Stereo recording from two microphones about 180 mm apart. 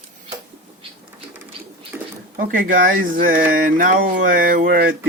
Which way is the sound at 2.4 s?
50° right (ahead or behind).